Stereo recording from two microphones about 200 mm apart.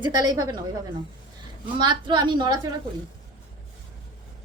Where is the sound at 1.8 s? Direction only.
20° right (ahead or behind).